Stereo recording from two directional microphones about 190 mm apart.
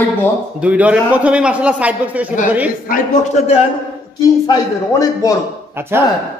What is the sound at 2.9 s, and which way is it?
Speech, 35° left (ahead or behind).